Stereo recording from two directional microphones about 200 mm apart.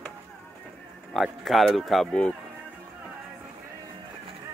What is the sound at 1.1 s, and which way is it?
Speech, centre (ahead or behind).